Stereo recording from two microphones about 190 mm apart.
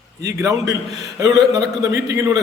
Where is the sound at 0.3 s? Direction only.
15° right (ahead or behind).